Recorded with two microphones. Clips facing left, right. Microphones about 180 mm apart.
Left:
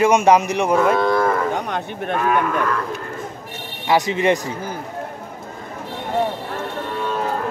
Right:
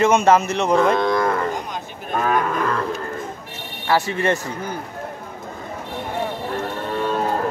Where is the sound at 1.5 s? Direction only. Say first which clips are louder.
Left 4 dB; 65° left (ahead or behind).